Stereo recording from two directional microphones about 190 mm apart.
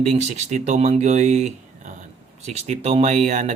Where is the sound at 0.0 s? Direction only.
35° right (ahead or behind).